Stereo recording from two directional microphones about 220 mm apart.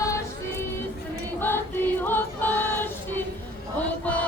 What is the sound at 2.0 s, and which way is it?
Music, 10° left (ahead or behind).